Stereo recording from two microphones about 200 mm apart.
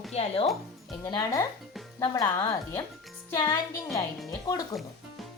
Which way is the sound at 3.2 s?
20° left (ahead or behind).